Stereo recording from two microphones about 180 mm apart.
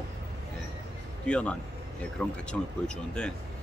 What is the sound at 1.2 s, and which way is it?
Speech, 5° left (ahead or behind).